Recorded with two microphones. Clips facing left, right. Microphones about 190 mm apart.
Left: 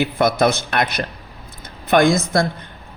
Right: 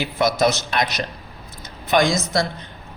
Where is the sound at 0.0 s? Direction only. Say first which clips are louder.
Left 2 dB; 55° left (ahead or behind).